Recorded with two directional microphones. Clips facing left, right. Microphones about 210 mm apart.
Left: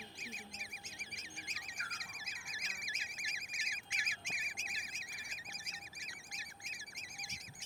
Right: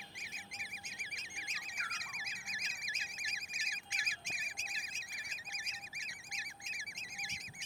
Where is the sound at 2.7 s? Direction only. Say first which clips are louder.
Even; 25° right (ahead or behind).